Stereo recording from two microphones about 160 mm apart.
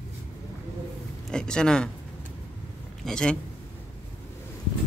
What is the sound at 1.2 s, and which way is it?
Speech, 5° left (ahead or behind).